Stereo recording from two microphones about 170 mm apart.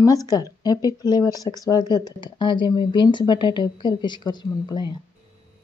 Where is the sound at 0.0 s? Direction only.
20° left (ahead or behind).